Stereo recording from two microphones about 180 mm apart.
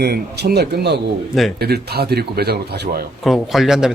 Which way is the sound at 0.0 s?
60° right (ahead or behind).